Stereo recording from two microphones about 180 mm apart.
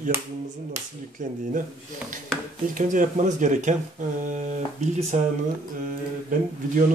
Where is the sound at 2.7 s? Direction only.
45° right (ahead or behind).